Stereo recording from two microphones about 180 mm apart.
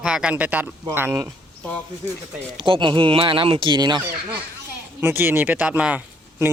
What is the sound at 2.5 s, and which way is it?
Speech, 25° right (ahead or behind).